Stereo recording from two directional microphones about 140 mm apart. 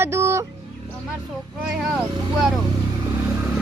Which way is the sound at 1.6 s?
5° right (ahead or behind).